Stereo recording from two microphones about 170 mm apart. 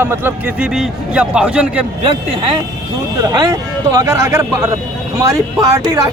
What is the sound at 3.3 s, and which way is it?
A man's voice, 20° right (ahead or behind).